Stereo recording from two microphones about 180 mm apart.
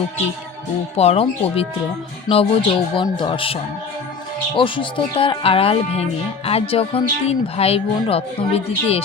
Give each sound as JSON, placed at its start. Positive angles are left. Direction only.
{"t": 0.9, "sound": "speech", "side_deg": 35}